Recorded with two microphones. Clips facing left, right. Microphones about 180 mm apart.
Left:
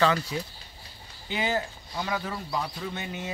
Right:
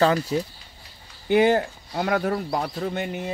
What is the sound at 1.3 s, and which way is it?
Speech, 55° right (ahead or behind).